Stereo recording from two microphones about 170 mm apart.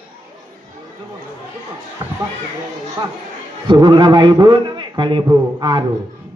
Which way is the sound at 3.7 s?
25° right (ahead or behind).